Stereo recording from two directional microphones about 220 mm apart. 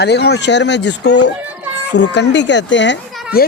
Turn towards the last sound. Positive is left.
turn(degrees=50)  # may be behind; listen again after turning